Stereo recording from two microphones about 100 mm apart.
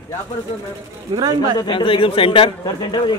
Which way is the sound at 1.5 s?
55° left (ahead or behind).